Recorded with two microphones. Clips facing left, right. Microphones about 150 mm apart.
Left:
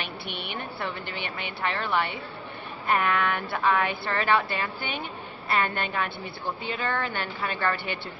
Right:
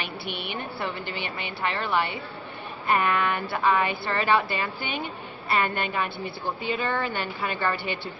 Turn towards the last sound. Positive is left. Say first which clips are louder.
# right 1 dB
turn(degrees=-5)  # may be behind; listen again after turning